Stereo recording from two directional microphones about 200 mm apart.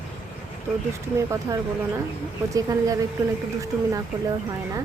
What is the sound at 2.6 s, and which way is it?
Speech, 15° right (ahead or behind).